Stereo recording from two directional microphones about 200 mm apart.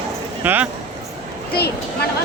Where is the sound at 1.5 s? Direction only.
55° left (ahead or behind).